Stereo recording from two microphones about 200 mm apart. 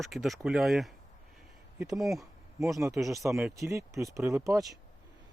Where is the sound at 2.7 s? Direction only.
15° right (ahead or behind).